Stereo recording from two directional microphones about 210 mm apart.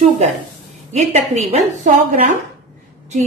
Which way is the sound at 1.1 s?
30° right (ahead or behind).